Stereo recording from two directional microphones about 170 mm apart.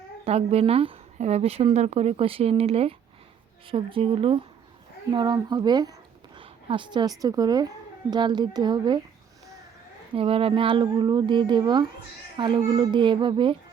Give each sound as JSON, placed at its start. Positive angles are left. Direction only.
{"t": 0.3, "sound": "a woman's voice", "side_deg": -35}
{"t": 10.2, "sound": "speech", "side_deg": -35}